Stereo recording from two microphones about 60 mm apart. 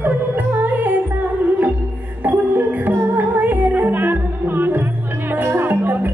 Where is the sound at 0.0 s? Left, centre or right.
Right.